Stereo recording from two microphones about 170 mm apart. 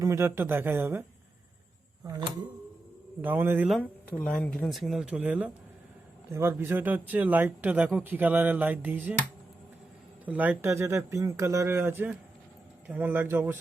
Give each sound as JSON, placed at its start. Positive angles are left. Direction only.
{"t": 0.0, "sound": "speech", "side_deg": -15}
{"t": 2.0, "sound": "speech", "side_deg": -20}
{"t": 3.2, "sound": "speech", "side_deg": -10}
{"t": 3.7, "sound": "speech", "side_deg": 5}
{"t": 10.2, "sound": "speech", "side_deg": -10}